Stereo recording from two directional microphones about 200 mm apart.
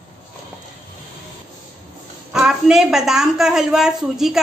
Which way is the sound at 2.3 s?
5° right (ahead or behind).